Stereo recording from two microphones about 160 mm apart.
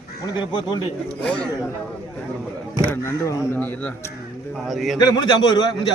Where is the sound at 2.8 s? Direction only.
15° left (ahead or behind).